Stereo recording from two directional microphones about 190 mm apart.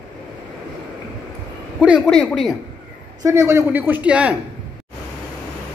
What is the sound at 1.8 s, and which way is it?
Speech, centre (ahead or behind).